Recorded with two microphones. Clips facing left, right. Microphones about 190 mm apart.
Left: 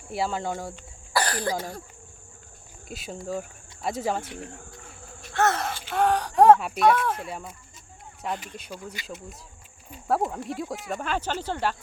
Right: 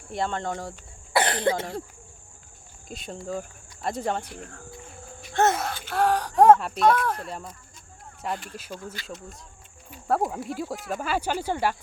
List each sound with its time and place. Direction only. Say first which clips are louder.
0.1 s speech: even; 5° left (ahead or behind)
1.1 s cough: right 3 dB; 25° right (ahead or behind)
2.9 s speech: even; 5° left (ahead or behind)
5.3 s a sound: right 2 dB; 20° right (ahead or behind)
5.5 s speech: even; centre (ahead or behind)
8.7 s speech: right 1 dB; 15° left (ahead or behind)
10.1 s speech: even; centre (ahead or behind)